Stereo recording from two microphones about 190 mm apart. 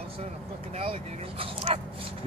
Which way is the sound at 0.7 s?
30° right (ahead or behind).